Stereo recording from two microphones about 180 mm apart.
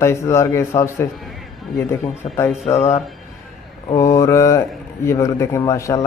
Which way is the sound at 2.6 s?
35° left (ahead or behind).